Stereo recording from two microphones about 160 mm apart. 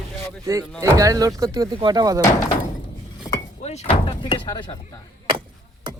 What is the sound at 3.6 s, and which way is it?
Speech, 45° left (ahead or behind).